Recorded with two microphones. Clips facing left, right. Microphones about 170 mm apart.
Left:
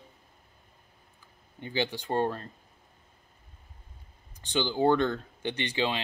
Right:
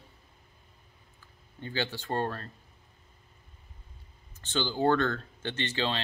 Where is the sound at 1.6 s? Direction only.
15° left (ahead or behind).